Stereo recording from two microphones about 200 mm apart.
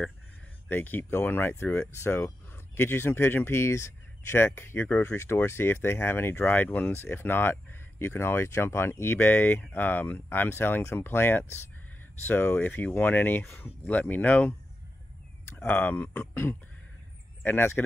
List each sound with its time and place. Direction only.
0.7 s speech: 10° left (ahead or behind)
15.5 s speech: 10° left (ahead or behind)